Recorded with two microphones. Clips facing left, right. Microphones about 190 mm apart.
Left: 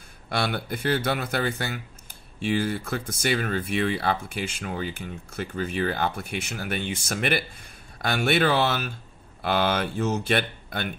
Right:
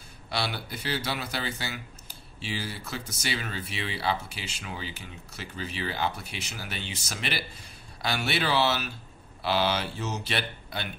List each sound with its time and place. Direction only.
0.3 s speech: 50° left (ahead or behind)